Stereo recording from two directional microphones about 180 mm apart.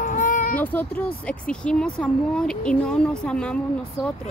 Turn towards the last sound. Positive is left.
turn(degrees=5)  # may be behind; listen again after turning